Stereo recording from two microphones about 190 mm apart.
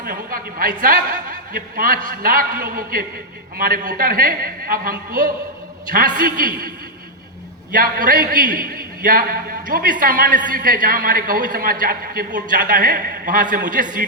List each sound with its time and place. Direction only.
0.0 s a man's voice: 50° right (ahead or behind)
7.7 s a man's voice: 45° right (ahead or behind)